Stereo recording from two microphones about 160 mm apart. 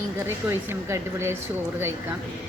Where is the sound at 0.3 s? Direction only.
15° right (ahead or behind).